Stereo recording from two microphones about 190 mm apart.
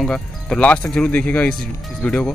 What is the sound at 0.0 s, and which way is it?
Speech, 5° left (ahead or behind).